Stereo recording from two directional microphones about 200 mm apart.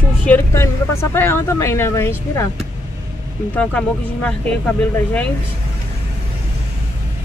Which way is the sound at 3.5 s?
5° left (ahead or behind).